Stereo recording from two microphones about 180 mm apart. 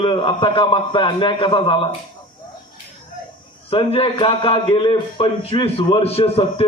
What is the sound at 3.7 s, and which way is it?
A man's voice, 30° left (ahead or behind).